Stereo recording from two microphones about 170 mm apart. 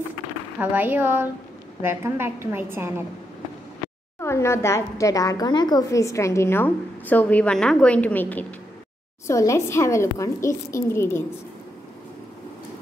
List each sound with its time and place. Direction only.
0.6 s a woman's voice: 10° right (ahead or behind)
4.2 s a woman's voice: 15° left (ahead or behind)